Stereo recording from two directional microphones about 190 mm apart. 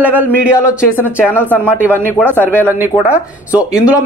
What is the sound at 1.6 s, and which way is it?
Speech, 10° right (ahead or behind).